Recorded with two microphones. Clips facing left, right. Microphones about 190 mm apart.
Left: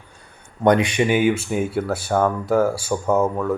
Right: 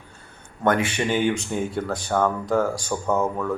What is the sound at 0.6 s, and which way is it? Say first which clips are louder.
Speech: left 5 dB; 15° left (ahead or behind).